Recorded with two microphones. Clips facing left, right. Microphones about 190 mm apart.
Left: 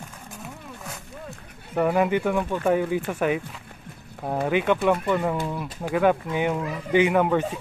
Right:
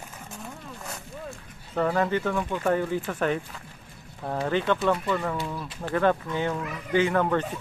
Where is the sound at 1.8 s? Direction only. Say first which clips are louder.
Left 3 dB; 15° left (ahead or behind).